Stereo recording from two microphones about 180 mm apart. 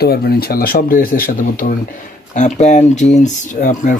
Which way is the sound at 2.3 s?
40° left (ahead or behind).